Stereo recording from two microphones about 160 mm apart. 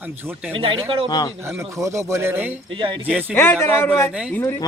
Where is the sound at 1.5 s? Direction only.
15° right (ahead or behind).